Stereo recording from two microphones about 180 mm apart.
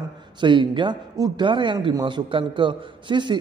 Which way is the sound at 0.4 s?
25° right (ahead or behind).